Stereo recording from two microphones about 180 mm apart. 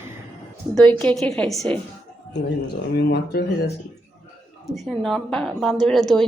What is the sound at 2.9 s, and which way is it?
Speech, 60° left (ahead or behind).